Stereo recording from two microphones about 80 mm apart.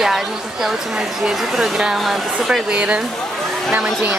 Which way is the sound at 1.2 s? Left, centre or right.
Centre.